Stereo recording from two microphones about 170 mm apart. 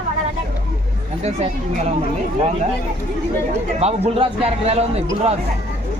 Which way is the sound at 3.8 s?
35° right (ahead or behind).